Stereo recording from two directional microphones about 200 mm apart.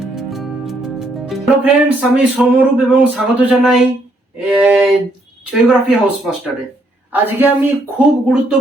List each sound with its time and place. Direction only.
0.0 s music: centre (ahead or behind)
4.4 s a sound: 5° right (ahead or behind)
5.5 s a woman's voice: centre (ahead or behind)